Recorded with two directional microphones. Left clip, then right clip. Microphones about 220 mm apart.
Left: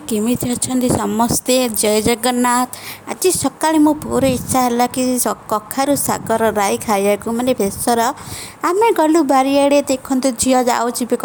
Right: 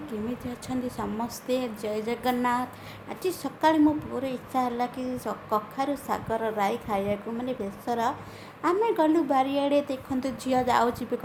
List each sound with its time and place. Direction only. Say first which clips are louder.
0.1 s a woman's voice: left 17 dB; 45° left (ahead or behind)